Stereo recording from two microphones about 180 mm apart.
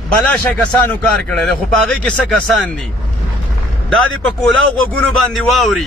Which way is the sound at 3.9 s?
5° left (ahead or behind).